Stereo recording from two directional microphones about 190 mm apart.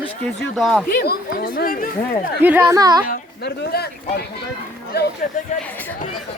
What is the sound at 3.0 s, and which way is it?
Speech, 55° left (ahead or behind).